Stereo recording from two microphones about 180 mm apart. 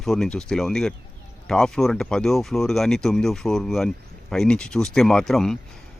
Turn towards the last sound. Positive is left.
turn(degrees=5)  # may be behind; listen again after turning